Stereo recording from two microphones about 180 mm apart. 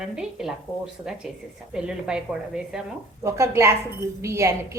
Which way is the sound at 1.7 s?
5° right (ahead or behind).